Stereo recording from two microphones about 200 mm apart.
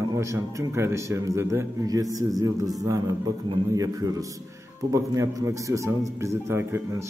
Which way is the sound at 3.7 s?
15° right (ahead or behind).